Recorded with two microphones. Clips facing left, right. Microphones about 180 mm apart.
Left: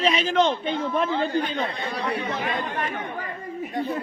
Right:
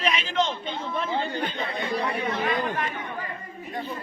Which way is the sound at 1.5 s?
65° left (ahead or behind).